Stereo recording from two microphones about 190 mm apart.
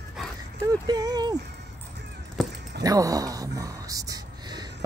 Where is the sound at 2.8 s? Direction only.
20° right (ahead or behind).